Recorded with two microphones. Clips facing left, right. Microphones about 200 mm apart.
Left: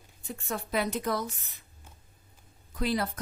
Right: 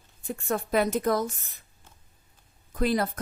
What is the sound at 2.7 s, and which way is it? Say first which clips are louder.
Speech: right 4 dB; 50° right (ahead or behind).